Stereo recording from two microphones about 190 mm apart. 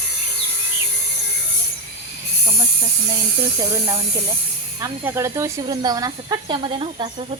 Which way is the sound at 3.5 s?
20° right (ahead or behind).